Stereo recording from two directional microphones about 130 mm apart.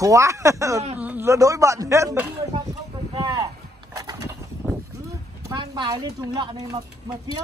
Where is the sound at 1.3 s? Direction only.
25° right (ahead or behind).